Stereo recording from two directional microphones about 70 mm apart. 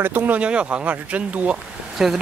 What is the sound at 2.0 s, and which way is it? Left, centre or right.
Speech, centre.